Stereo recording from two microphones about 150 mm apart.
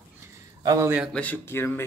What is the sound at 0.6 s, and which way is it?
Speech, 20° right (ahead or behind).